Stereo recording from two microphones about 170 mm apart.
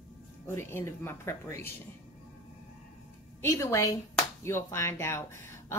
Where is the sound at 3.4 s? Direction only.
15° left (ahead or behind).